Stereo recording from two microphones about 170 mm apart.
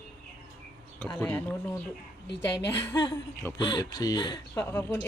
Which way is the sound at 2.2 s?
90° left.